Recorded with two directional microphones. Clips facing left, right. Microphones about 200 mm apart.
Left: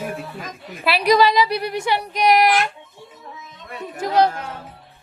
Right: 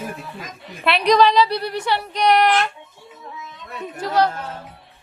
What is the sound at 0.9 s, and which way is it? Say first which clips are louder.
A woman's voice: right 1 dB; 5° left (ahead or behind).